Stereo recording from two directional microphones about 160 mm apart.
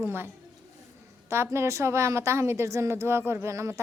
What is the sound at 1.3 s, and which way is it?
A woman's voice, 15° right (ahead or behind).